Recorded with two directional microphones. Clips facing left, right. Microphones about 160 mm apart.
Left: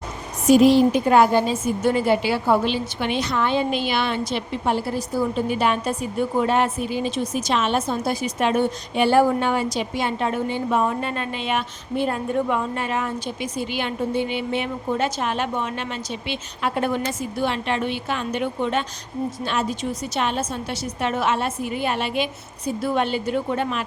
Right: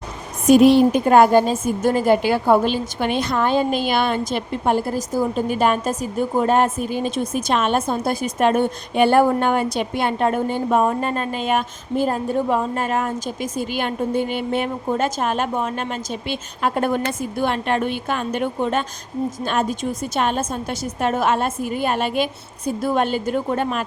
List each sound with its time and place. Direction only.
0.4 s a woman's voice: 60° right (ahead or behind); by 23.8 s 45° right (ahead or behind)